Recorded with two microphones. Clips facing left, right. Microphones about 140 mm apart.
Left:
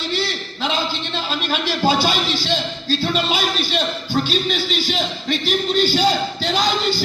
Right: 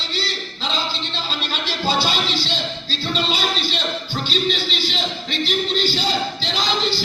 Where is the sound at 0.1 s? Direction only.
55° left (ahead or behind).